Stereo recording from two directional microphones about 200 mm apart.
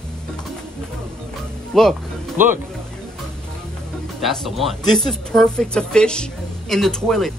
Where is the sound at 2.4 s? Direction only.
10° right (ahead or behind).